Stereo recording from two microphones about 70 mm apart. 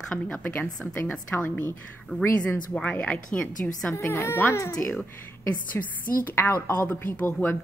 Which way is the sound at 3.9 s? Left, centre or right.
Left.